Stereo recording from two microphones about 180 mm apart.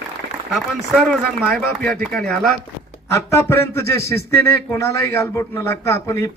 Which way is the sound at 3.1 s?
15° left (ahead or behind).